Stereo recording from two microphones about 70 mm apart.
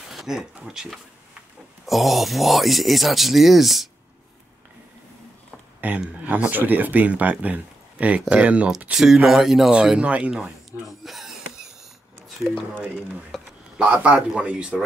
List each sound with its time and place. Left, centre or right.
0.1 s a sound: centre
0.7 s speech: centre
5.8 s speech: right; by 9.7 s centre
9.7 s speech: centre
10.9 s a sound: centre
13.3 s speech: centre
13.7 s speech: centre